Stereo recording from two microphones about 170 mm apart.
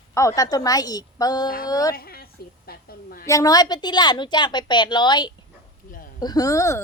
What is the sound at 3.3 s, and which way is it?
A woman's voice, 20° left (ahead or behind).